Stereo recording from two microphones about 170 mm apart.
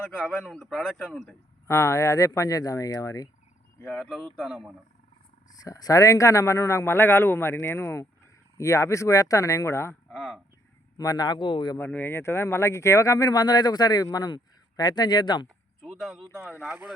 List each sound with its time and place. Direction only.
0.2 s a man's voice: 5° left (ahead or behind)
1.3 s speech: 15° left (ahead or behind)
3.8 s a man's voice: 5° left (ahead or behind)
5.5 s speech: 20° left (ahead or behind)
10.1 s speech: 5° left (ahead or behind)
10.9 s speech: 20° left (ahead or behind)
11.8 s speech: 10° left (ahead or behind)
15.8 s speech: centre (ahead or behind)